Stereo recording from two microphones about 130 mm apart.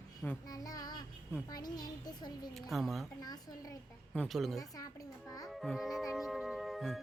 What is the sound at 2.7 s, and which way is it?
Speech, centre (ahead or behind).